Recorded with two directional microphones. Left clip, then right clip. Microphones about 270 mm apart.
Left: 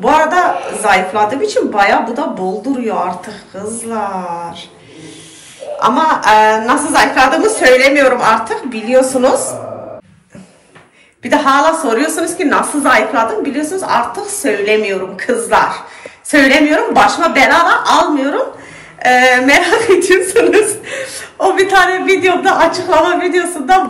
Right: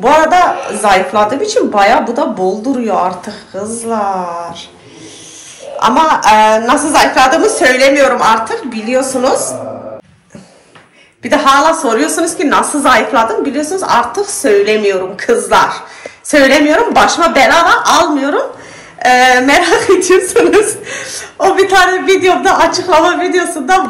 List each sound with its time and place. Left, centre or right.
0.0 s a woman's voice: centre
5.8 s a woman's voice: centre
11.2 s a woman's voice: centre